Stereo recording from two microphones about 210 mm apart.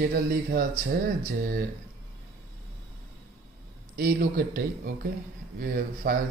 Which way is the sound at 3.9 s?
45° right (ahead or behind).